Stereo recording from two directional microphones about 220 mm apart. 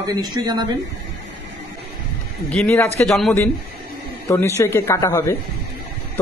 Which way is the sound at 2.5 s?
5° left (ahead or behind).